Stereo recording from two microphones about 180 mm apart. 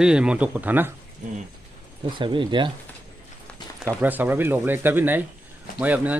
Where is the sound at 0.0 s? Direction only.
5° right (ahead or behind).